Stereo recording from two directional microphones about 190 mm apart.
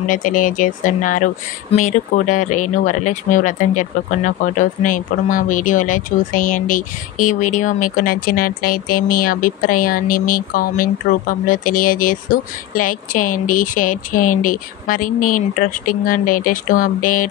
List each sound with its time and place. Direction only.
0.1 s speech: 45° left (ahead or behind)